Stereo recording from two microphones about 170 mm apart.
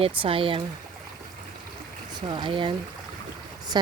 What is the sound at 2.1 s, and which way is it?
Speech, 25° right (ahead or behind).